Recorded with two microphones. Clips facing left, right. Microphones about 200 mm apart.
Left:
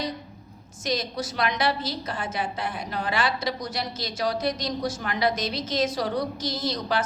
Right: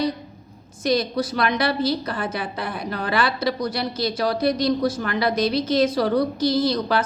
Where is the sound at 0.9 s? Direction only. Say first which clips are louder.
Right 7 dB; 60° right (ahead or behind).